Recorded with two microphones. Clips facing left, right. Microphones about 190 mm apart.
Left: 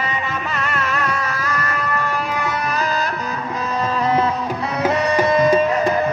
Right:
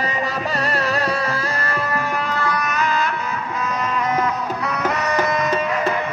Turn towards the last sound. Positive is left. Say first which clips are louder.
# left 5 dB
turn(degrees=30)  # may be behind; listen again after turning